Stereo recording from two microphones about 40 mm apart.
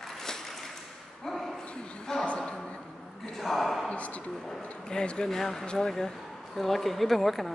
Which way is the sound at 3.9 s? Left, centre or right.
Left.